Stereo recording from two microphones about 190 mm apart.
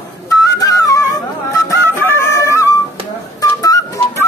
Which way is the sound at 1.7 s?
10° left (ahead or behind).